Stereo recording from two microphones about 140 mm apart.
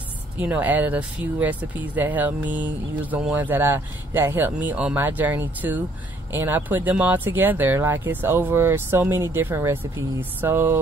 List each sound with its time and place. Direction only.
0.4 s speech: 10° right (ahead or behind)